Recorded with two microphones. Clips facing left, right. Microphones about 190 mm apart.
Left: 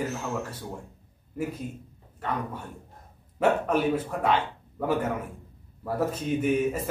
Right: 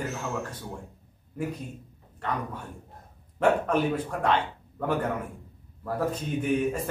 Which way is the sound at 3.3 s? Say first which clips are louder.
Even; 10° left (ahead or behind).